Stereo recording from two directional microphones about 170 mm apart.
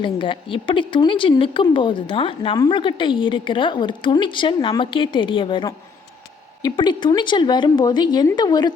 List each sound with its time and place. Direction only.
0.0 s a woman's voice: 30° left (ahead or behind)